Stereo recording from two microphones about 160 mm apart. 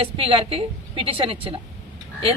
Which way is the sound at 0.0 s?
35° right (ahead or behind).